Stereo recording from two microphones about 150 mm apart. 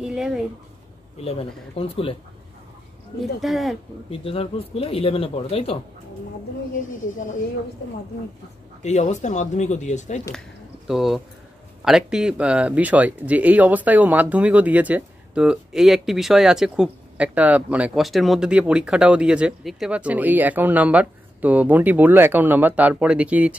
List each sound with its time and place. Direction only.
0.0 s speech: 5° right (ahead or behind)
1.2 s speech: 40° left (ahead or behind)
3.2 s speech: centre (ahead or behind)
4.1 s speech: 40° left (ahead or behind)
8.8 s speech: 50° left (ahead or behind)
10.9 s speech: 5° right (ahead or behind)